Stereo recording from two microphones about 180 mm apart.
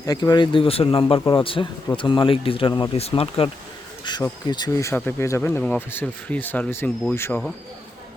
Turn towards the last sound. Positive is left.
turn(degrees=15)  # may be behind; listen again after turning